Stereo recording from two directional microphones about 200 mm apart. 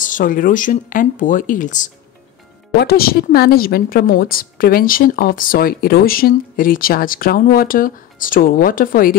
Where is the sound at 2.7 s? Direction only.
50° left (ahead or behind).